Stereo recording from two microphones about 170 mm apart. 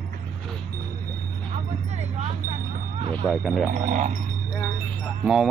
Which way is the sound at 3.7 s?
50° right (ahead or behind).